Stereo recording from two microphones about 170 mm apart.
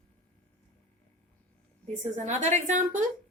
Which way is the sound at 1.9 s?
45° right (ahead or behind).